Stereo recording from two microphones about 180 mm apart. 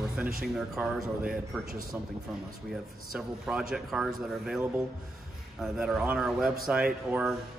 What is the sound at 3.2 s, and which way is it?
A man's voice, 5° right (ahead or behind).